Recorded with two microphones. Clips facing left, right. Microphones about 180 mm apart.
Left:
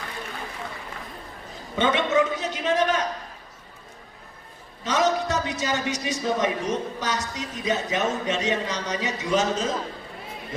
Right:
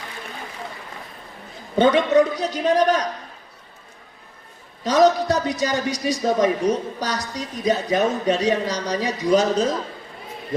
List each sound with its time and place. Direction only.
1.7 s a man's voice: 35° right (ahead or behind)
4.8 s a man's voice: 35° right (ahead or behind)